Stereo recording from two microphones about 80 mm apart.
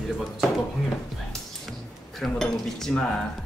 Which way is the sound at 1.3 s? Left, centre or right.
Centre.